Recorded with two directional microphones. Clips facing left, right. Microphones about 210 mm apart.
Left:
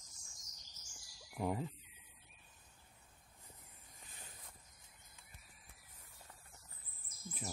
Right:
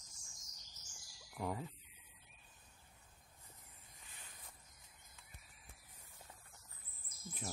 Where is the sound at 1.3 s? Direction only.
15° left (ahead or behind).